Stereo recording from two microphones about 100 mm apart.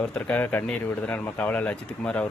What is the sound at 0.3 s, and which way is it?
Speech, 20° left (ahead or behind).